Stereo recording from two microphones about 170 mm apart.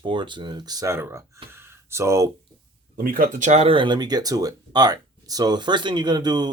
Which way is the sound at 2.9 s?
55° right (ahead or behind).